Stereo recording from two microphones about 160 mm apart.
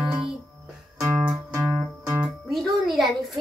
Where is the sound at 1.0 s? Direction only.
20° right (ahead or behind).